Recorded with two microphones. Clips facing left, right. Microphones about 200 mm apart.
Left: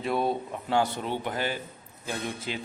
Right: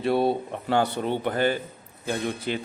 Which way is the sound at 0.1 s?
35° right (ahead or behind).